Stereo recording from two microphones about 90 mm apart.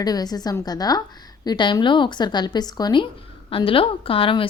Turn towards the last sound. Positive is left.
turn(degrees=85)